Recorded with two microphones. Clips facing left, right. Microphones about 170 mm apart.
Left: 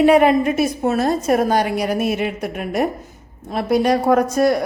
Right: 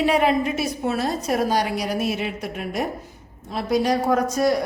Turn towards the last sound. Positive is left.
turn(degrees=55)  # may be behind; listen again after turning